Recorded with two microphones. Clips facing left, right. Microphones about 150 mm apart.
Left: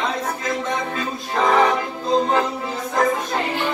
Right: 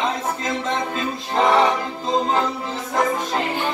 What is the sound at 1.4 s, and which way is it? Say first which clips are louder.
Music: even; 25° right (ahead or behind).